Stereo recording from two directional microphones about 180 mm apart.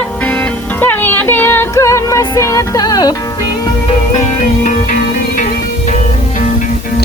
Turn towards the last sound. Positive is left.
turn(degrees=45)  # may be behind; listen again after turning